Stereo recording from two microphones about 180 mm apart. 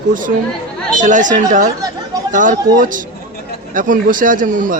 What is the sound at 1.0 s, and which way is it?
Speech, 45° right (ahead or behind).